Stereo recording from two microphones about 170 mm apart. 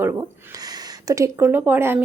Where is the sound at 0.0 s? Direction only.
20° right (ahead or behind).